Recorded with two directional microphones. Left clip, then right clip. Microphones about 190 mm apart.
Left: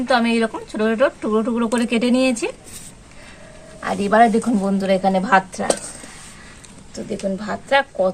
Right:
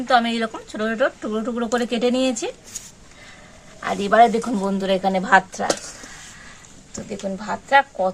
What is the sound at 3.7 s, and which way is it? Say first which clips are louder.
A woman's voice: even; 25° right (ahead or behind).